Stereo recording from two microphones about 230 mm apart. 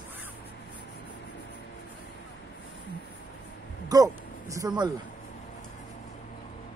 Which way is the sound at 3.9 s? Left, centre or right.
Centre.